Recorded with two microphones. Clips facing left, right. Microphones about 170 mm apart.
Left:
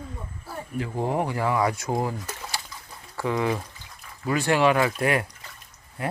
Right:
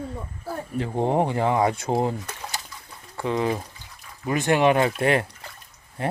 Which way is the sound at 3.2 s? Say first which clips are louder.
Right 1 dB; 25° right (ahead or behind).